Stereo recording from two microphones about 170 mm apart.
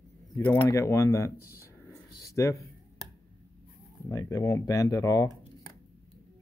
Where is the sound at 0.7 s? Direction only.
15° left (ahead or behind).